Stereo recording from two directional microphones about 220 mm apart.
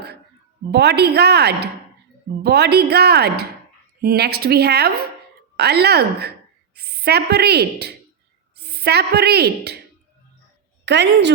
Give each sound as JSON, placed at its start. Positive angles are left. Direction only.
{"t": 0.7, "sound": "a woman's voice", "side_deg": -50}
{"t": 10.8, "sound": "a woman's voice", "side_deg": -50}